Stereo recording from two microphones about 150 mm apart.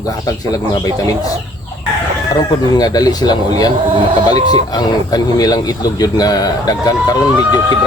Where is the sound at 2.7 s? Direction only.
25° left (ahead or behind).